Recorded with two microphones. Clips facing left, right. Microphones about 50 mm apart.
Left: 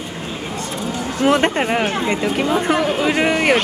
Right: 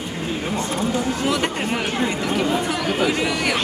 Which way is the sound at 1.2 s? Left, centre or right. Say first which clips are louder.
Left 6 dB; left.